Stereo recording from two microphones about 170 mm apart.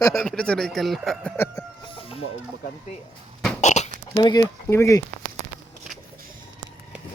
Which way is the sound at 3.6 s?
45° left (ahead or behind).